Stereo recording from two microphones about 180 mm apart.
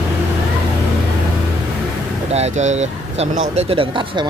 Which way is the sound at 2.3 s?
40° right (ahead or behind).